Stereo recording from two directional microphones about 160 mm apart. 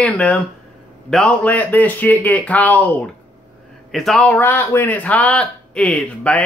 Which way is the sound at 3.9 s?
5° left (ahead or behind).